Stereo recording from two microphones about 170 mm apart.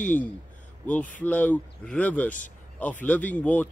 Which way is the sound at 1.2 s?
10° left (ahead or behind).